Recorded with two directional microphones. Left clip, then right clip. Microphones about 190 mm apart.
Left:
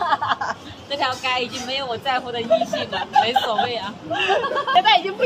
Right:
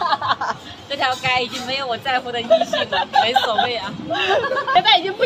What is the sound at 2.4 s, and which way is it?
Speech, 35° right (ahead or behind).